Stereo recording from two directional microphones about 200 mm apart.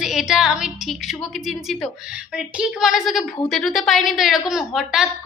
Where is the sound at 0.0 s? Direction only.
5° right (ahead or behind).